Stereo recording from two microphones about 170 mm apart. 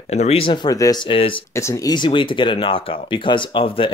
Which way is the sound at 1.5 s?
15° left (ahead or behind).